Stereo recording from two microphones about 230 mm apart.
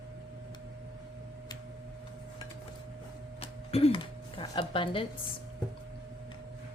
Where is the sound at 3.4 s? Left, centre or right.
Left.